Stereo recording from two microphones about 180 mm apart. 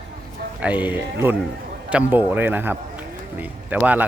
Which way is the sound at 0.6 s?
10° right (ahead or behind).